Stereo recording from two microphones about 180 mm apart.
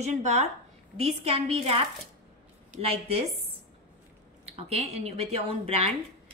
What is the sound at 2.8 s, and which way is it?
Speech, 35° right (ahead or behind).